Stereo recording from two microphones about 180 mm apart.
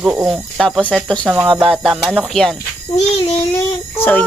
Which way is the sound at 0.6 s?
5° left (ahead or behind).